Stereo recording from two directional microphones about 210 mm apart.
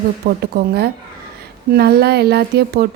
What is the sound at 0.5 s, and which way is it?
A woman's voice, 50° right (ahead or behind).